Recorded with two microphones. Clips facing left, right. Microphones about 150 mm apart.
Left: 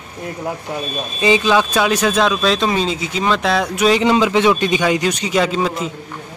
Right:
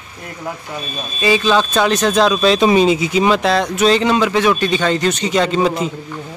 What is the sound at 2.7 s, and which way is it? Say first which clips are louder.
Speech: right 7 dB; 10° right (ahead or behind).